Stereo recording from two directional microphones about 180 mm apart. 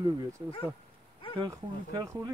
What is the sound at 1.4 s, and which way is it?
Speech, 20° right (ahead or behind).